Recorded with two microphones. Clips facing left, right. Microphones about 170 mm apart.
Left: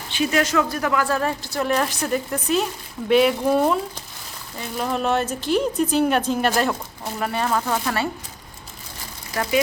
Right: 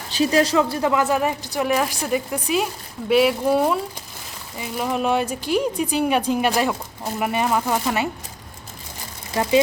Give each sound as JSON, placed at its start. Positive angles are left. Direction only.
{"t": 0.1, "sound": "a woman's voice", "side_deg": -35}
{"t": 9.3, "sound": "speech", "side_deg": -20}